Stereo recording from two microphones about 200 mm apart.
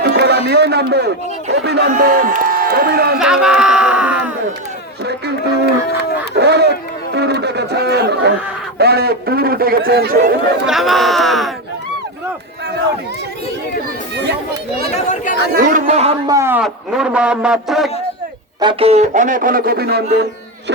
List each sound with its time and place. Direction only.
0.0 s a sound: 55° right (ahead or behind)
1.6 s a man's voice: 55° right (ahead or behind)
3.2 s a man's voice: 5° right (ahead or behind)
5.0 s a man's voice: 55° right (ahead or behind)
10.7 s a man's voice: centre (ahead or behind)
14.9 s speech: 35° left (ahead or behind)
15.5 s a man's voice: 45° right (ahead or behind)
16.2 s a man's voice: 15° right (ahead or behind)
18.6 s a man's voice: 25° right (ahead or behind); by 20.2 s 55° right (ahead or behind)